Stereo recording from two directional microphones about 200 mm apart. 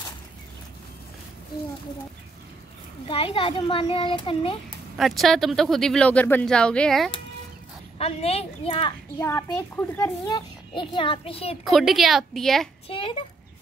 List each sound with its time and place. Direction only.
3.1 s a child's voice: 25° left (ahead or behind)
4.9 s speech: centre (ahead or behind)
8.0 s a woman's voice: 30° left (ahead or behind)
9.2 s a child's voice: 10° left (ahead or behind); by 11.5 s 30° left (ahead or behind)
11.6 s speech: centre (ahead or behind)
12.8 s a child's voice: 25° left (ahead or behind)